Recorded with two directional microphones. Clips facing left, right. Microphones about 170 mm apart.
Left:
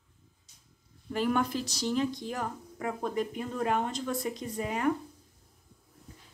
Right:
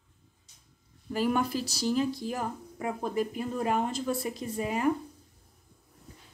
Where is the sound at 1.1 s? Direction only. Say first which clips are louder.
Right 1 dB; 5° right (ahead or behind).